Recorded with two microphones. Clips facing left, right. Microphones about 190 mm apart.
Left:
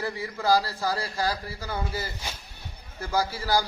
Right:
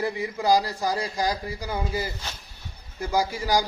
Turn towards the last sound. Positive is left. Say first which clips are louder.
# right 2 dB
turn(degrees=-15)  # may be behind; listen again after turning